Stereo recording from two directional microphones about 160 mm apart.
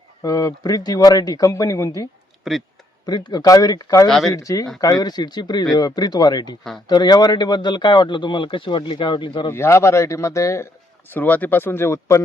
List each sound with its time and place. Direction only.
0.2 s a man's voice: 20° left (ahead or behind)
2.4 s speech: centre (ahead or behind)
3.1 s a man's voice: 25° left (ahead or behind)
9.5 s speech: 15° left (ahead or behind)